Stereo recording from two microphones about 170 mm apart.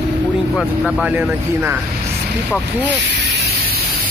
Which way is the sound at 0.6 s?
5° right (ahead or behind).